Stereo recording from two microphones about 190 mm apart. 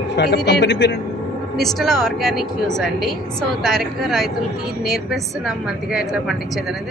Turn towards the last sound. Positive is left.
turn(degrees=-5)  # may be behind; listen again after turning